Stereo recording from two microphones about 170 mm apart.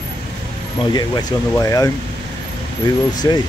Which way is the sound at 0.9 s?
20° left (ahead or behind).